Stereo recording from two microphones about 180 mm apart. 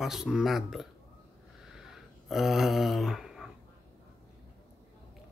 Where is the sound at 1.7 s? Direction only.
Centre (ahead or behind).